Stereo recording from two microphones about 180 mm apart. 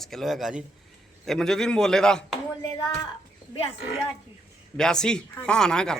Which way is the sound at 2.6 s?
20° left (ahead or behind).